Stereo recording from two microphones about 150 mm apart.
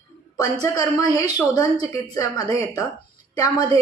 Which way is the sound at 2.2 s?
20° left (ahead or behind).